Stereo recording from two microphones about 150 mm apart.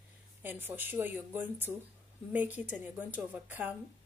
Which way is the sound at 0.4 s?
15° right (ahead or behind).